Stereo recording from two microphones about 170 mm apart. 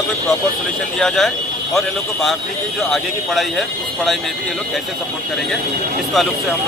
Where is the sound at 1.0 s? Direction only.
Centre (ahead or behind).